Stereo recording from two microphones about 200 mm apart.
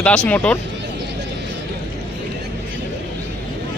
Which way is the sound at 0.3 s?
5° left (ahead or behind).